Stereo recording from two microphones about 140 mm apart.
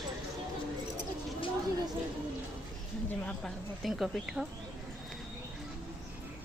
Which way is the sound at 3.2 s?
Centre (ahead or behind).